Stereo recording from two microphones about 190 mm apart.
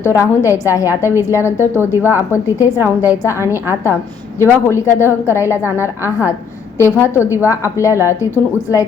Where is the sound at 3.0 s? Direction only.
10° right (ahead or behind).